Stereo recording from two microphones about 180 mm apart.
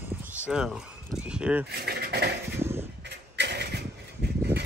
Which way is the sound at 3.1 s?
70° right (ahead or behind).